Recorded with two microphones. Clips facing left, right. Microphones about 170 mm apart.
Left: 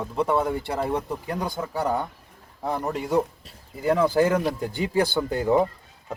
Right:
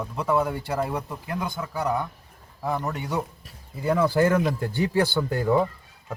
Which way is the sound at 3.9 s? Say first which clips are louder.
Even; 15° left (ahead or behind).